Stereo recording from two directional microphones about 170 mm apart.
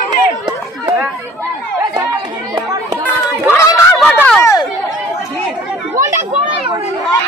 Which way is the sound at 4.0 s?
10° left (ahead or behind).